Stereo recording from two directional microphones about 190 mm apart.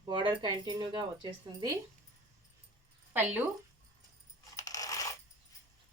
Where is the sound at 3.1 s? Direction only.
10° right (ahead or behind).